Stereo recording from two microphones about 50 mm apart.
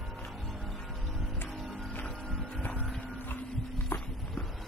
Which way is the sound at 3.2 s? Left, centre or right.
Left.